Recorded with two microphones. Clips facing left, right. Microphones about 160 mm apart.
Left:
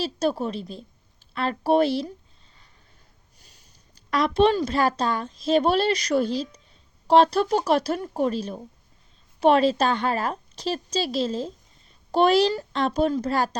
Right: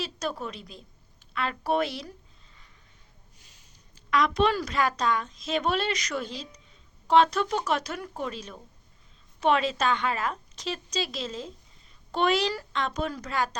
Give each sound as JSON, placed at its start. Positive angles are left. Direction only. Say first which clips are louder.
{"t": 0.0, "sound": "a woman's voice", "louder": "left 8 dB", "side_deg": 30}
{"t": 4.1, "sound": "a woman's voice", "louder": "left 4 dB", "side_deg": 30}